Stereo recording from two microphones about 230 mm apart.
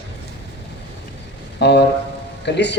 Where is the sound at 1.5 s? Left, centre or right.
Left.